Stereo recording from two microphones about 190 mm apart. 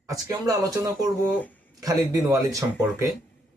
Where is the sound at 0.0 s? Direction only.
20° right (ahead or behind).